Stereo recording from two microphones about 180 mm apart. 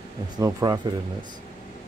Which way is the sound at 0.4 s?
20° right (ahead or behind).